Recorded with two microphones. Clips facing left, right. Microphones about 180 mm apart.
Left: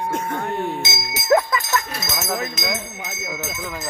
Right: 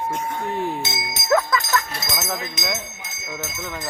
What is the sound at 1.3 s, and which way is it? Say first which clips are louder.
Jingle bell: left 3 dB; 30° left (ahead or behind).